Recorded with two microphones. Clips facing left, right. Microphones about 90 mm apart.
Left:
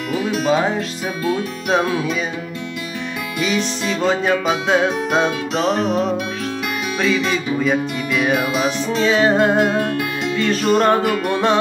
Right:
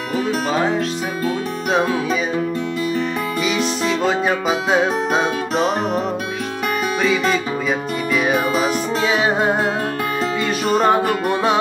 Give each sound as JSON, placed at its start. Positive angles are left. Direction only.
{"t": 3.8, "sound": "music", "side_deg": -5}
{"t": 5.8, "sound": "music", "side_deg": -45}
{"t": 7.6, "sound": "music", "side_deg": -5}